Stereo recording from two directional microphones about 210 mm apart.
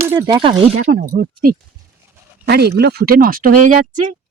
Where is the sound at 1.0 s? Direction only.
45° right (ahead or behind).